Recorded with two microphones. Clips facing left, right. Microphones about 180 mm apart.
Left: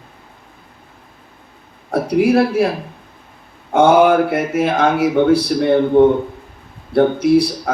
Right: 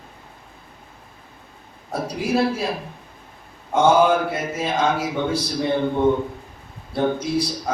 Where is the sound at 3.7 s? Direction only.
60° left (ahead or behind).